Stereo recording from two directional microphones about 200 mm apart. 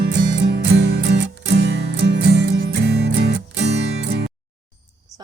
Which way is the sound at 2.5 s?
55° right (ahead or behind).